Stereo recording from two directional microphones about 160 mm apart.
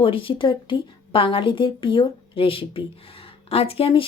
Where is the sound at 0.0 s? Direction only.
35° left (ahead or behind).